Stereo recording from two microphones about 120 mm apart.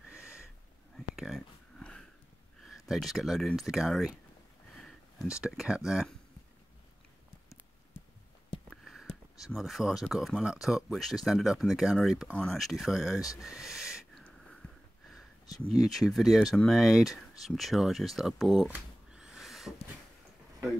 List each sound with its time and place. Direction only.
0.1 s sniff: 10° right (ahead or behind)
0.9 s a sound: centre (ahead or behind)
1.8 s sniff: 5° left (ahead or behind)
2.9 s speech: centre (ahead or behind)
4.8 s a sound: 5° left (ahead or behind)
5.4 s speech: 5° right (ahead or behind)
8.6 s speech: centre (ahead or behind)
13.4 s owl: 5° right (ahead or behind)
14.1 s a sound: 5° left (ahead or behind)
15.4 s speech: 30° left (ahead or behind)
15.8 s speech: centre (ahead or behind)
18.7 s a sound: 5° right (ahead or behind)